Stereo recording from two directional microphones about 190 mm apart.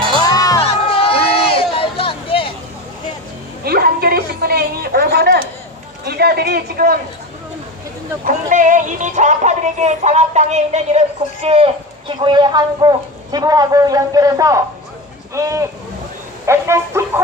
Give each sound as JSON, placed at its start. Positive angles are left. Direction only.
{"t": 0.2, "sound": "music", "side_deg": 20}
{"t": 0.6, "sound": "crowd", "side_deg": 30}
{"t": 1.5, "sound": "music", "side_deg": 30}
{"t": 3.6, "sound": "a sound", "side_deg": -55}
{"t": 6.1, "sound": "a man's voice", "side_deg": -60}
{"t": 8.2, "sound": "music", "side_deg": -40}
{"t": 11.4, "sound": "a man's voice", "side_deg": -30}